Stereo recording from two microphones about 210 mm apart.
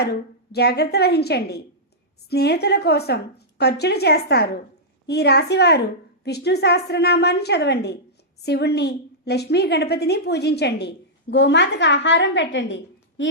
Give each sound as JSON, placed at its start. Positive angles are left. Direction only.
{"t": 0.0, "sound": "a woman's voice", "side_deg": 50}